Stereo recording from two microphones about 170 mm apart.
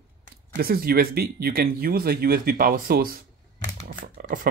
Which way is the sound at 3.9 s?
60° right (ahead or behind).